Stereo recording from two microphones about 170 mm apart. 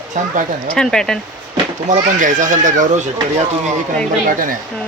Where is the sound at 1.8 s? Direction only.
45° right (ahead or behind).